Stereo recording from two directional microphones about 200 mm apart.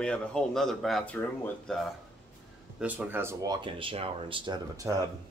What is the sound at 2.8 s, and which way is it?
Speech, 10° right (ahead or behind).